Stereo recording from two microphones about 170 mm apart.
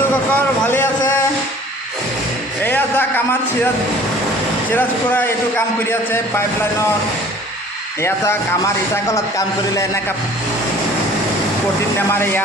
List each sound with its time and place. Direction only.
0.3 s a man's voice: 10° left (ahead or behind)
2.6 s a man's voice: 10° left (ahead or behind)
4.7 s a man's voice: 10° left (ahead or behind)
8.0 s a man's voice: 15° left (ahead or behind)